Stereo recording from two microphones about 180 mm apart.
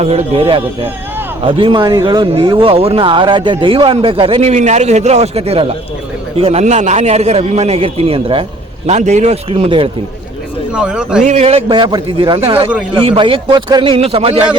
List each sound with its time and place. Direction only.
0.0 s a man's voice: 35° right (ahead or behind)
10.8 s a man's voice: 5° right (ahead or behind)
11.2 s a man's voice: 40° right (ahead or behind)